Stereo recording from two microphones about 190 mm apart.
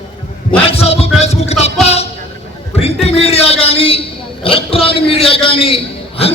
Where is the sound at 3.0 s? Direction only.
35° left (ahead or behind).